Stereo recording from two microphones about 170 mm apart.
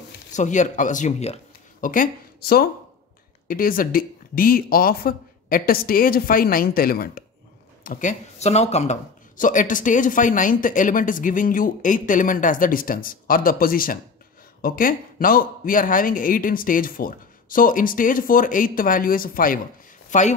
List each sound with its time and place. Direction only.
0.3 s speech: 45° left (ahead or behind)
20.1 s speech: 45° left (ahead or behind)